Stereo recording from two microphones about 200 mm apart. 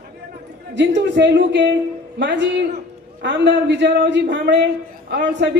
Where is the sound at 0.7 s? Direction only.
60° right (ahead or behind).